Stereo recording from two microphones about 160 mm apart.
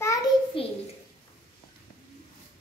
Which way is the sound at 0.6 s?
35° left (ahead or behind).